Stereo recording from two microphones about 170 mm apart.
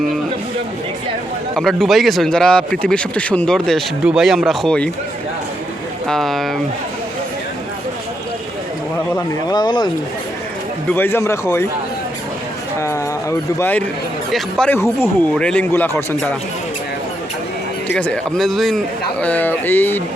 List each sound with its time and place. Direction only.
1.5 s speech: centre (ahead or behind)
6.1 s speech: centre (ahead or behind)
9.1 s speech: 25° left (ahead or behind)
10.9 s speech: 15° left (ahead or behind)
13.6 s speech: 10° left (ahead or behind)
17.9 s speech: 5° left (ahead or behind)